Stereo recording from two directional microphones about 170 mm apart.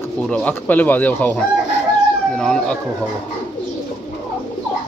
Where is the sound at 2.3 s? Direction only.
5° left (ahead or behind).